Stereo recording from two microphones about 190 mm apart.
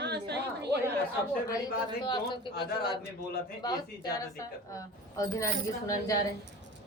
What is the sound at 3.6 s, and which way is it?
Child singing, 20° left (ahead or behind).